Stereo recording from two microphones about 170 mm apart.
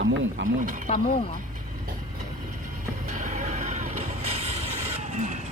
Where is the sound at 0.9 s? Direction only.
40° left (ahead or behind).